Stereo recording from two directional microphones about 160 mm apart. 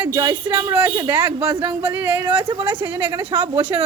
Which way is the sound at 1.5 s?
30° right (ahead or behind).